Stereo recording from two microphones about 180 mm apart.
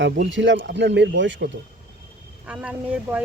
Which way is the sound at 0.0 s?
90° right.